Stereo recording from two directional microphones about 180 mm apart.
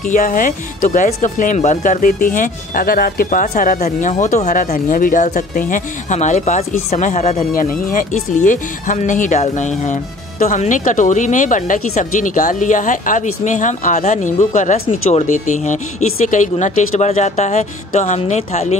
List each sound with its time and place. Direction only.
0.1 s speech: 45° left (ahead or behind)